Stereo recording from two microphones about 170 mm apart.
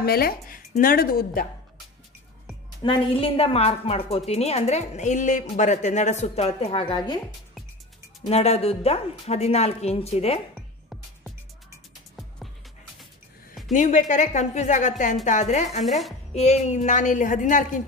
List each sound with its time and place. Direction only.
0.0 s a woman's voice: 65° left (ahead or behind)
2.8 s a woman's voice: 30° left (ahead or behind)
8.3 s a woman's voice: 40° left (ahead or behind)
13.7 s a woman's voice: 45° left (ahead or behind)